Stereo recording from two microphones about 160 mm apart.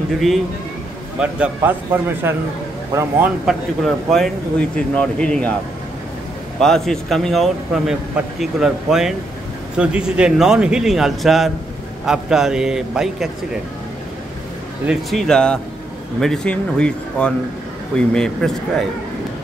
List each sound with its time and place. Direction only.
1.2 s speech: 10° right (ahead or behind)
3.4 s a man's voice: centre (ahead or behind)
6.6 s a man's voice: 5° left (ahead or behind)
14.9 s a man's voice: centre (ahead or behind)